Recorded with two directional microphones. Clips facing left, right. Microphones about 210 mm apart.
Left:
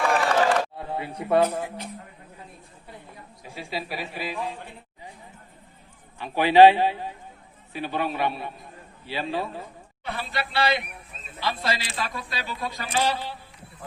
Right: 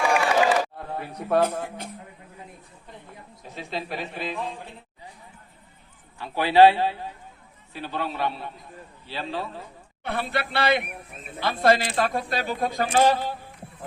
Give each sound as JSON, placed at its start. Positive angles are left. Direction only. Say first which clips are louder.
{"t": 0.2, "sound": "a sound", "louder": "right 1 dB", "side_deg": -5}
{"t": 0.8, "sound": "a sound", "louder": "left 2 dB", "side_deg": 5}
{"t": 1.2, "sound": "speech", "louder": "left 1 dB", "side_deg": 5}
{"t": 3.4, "sound": "speech", "louder": "even", "side_deg": 10}
{"t": 6.1, "sound": "speech", "louder": "left 2 dB", "side_deg": 15}
{"t": 10.0, "sound": "speech", "louder": "right 4 dB", "side_deg": -55}